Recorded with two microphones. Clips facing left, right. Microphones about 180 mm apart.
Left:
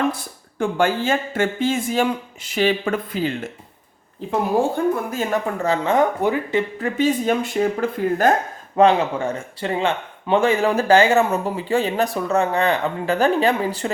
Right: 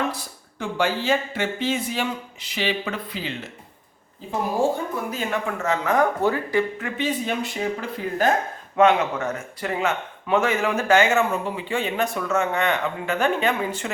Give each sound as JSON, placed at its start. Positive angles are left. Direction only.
{"t": 0.6, "sound": "speech", "side_deg": 50}
{"t": 5.1, "sound": "speech", "side_deg": 40}
{"t": 6.7, "sound": "speech", "side_deg": 40}
{"t": 8.7, "sound": "speech", "side_deg": 30}